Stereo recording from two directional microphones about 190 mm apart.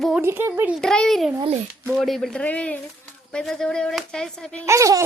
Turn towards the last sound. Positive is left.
turn(degrees=-15)  # may be behind; listen again after turning